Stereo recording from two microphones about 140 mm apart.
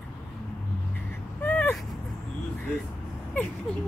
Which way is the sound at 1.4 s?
15° left (ahead or behind).